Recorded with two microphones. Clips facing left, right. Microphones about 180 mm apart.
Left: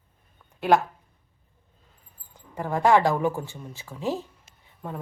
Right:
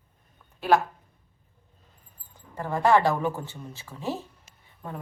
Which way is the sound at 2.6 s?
15° left (ahead or behind).